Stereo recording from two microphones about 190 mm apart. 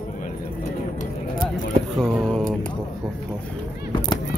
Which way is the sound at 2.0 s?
5° left (ahead or behind).